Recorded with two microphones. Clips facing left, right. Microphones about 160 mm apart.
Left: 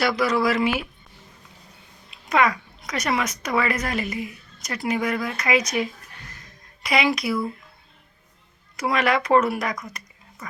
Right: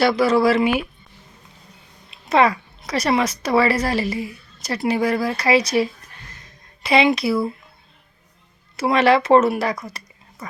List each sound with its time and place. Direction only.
0.0 s speech: 30° right (ahead or behind)
2.0 s a woman's voice: 30° right (ahead or behind)
8.7 s speech: 30° right (ahead or behind)